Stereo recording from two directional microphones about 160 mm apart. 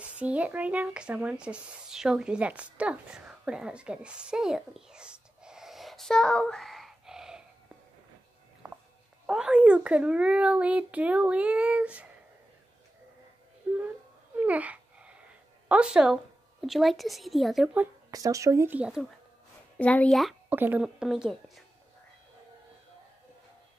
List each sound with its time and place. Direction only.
0.0 s speech: 10° right (ahead or behind)
9.2 s a child's voice: 5° right (ahead or behind)
13.7 s a sound: 10° right (ahead or behind)
15.7 s speech: 5° right (ahead or behind)
18.1 s a child's voice: 20° right (ahead or behind)
19.8 s speech: 10° left (ahead or behind)
20.4 s speech: 10° right (ahead or behind)